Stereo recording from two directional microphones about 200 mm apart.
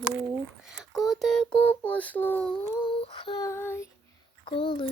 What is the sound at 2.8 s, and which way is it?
Female singing, 25° left (ahead or behind).